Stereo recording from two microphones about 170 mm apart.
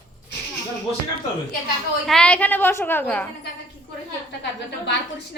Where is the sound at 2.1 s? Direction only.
5° left (ahead or behind).